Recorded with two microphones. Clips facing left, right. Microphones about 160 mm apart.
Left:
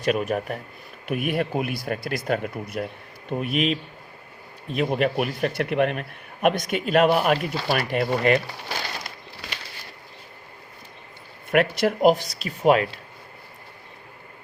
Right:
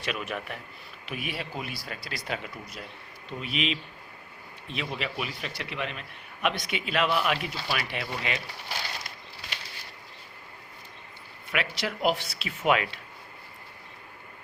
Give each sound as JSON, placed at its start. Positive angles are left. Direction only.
{"t": 0.0, "sound": "a man's voice", "side_deg": 45}
{"t": 11.5, "sound": "speech", "side_deg": 50}